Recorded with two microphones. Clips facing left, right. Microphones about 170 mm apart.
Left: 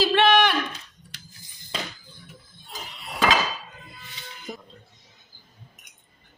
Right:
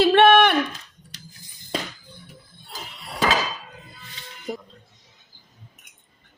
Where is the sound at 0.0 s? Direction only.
60° right (ahead or behind).